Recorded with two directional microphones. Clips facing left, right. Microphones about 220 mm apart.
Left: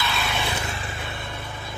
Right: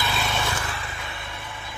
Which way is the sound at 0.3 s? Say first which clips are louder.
Even; 15° left (ahead or behind).